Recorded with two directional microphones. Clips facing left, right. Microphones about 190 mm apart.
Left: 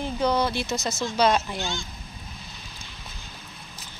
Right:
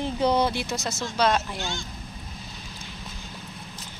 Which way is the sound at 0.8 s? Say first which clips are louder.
Left 2 dB; 5° right (ahead or behind).